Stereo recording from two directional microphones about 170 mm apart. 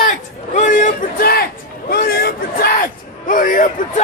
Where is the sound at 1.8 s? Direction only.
65° left (ahead or behind).